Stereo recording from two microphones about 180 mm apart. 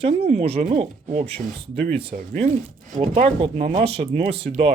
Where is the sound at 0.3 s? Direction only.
35° right (ahead or behind).